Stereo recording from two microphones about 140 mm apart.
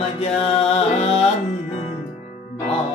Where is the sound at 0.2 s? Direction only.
45° left (ahead or behind).